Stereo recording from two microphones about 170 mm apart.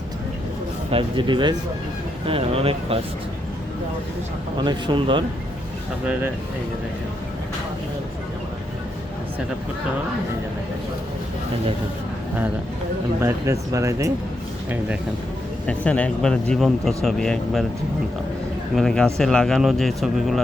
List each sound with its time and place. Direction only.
0.9 s speech: 30° right (ahead or behind)
4.5 s speech: 25° right (ahead or behind)
13.2 s speech: 20° right (ahead or behind)
15.6 s speech: 5° left (ahead or behind)
18.8 s speech: 5° left (ahead or behind)